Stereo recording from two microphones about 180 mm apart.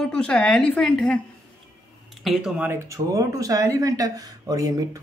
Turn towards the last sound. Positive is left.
turn(degrees=-20)  # may be behind; listen again after turning